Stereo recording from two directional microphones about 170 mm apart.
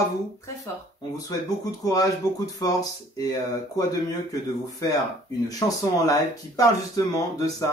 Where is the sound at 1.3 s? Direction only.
20° left (ahead or behind).